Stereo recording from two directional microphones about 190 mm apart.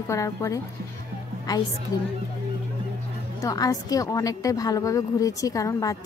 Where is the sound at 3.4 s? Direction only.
20° left (ahead or behind).